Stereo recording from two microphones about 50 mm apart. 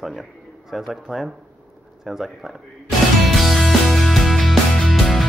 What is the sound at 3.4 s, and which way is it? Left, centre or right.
Music, centre.